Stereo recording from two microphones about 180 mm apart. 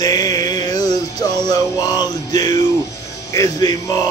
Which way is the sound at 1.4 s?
20° left (ahead or behind).